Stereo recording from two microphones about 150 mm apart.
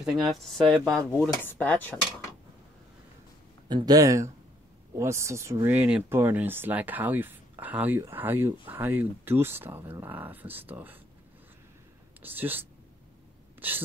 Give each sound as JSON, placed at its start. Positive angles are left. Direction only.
{"t": 0.0, "sound": "speech", "side_deg": 0}
{"t": 1.4, "sound": "cutlery", "side_deg": 10}
{"t": 3.6, "sound": "speech", "side_deg": -25}
{"t": 12.2, "sound": "speech", "side_deg": -15}
{"t": 13.6, "sound": "sneeze", "side_deg": -10}